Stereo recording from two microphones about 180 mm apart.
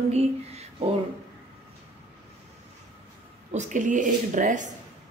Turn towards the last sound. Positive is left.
turn(degrees=-45)  # may be behind; listen again after turning